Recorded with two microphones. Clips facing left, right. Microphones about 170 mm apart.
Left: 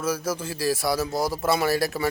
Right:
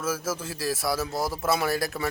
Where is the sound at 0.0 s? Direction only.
Centre (ahead or behind).